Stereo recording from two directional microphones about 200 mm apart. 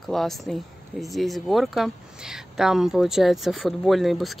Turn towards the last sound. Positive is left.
turn(degrees=0)  # may be behind; listen again after turning